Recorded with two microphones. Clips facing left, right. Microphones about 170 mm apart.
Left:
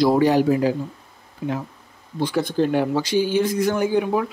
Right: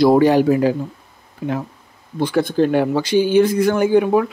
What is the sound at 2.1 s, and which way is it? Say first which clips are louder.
A man's voice: right 4 dB; 55° right (ahead or behind).